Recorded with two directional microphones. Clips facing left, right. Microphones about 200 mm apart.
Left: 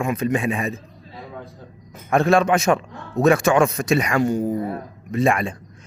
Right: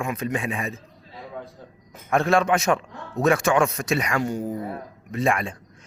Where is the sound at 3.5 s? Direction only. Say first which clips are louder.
Left 3 dB; 35° left (ahead or behind).